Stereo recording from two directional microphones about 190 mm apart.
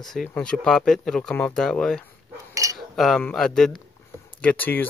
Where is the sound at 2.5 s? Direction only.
15° right (ahead or behind).